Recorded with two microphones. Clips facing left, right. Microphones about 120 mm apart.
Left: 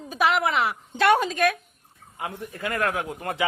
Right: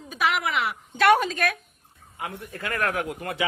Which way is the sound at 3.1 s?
35° left (ahead or behind).